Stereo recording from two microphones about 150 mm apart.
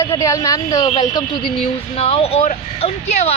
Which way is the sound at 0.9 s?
35° left (ahead or behind).